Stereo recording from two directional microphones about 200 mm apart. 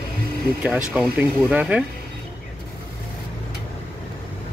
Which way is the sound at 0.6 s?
5° right (ahead or behind).